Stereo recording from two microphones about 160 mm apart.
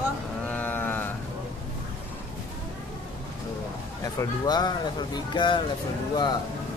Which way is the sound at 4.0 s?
25° left (ahead or behind).